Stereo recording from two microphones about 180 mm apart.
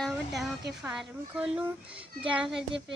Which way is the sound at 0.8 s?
5° right (ahead or behind).